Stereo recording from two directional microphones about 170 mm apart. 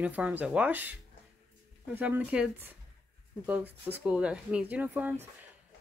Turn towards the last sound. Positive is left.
turn(degrees=-10)  # may be behind; listen again after turning